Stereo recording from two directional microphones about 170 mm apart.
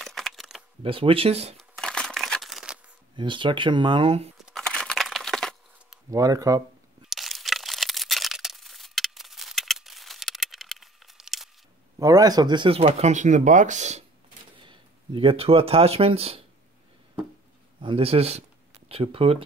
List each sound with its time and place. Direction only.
0.0 s a sound: centre (ahead or behind)
0.8 s speech: 30° right (ahead or behind)
1.6 s crushing: 5° left (ahead or behind)
3.2 s speech: 30° right (ahead or behind)
4.5 s a sound: 5° left (ahead or behind)
6.0 s speech: 20° right (ahead or behind)
7.0 s a sound: centre (ahead or behind)
12.0 s speech: 20° right (ahead or behind); by 14.0 s 45° right (ahead or behind)
14.6 s speech: 30° right (ahead or behind)
17.7 s speech: 30° right (ahead or behind)